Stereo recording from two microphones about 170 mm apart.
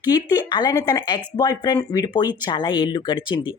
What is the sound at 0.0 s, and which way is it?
Speech, 25° left (ahead or behind).